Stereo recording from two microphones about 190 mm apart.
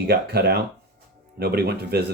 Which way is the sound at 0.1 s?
60° right (ahead or behind).